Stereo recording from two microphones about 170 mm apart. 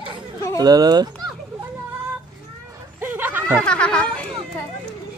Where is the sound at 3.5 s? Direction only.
5° left (ahead or behind).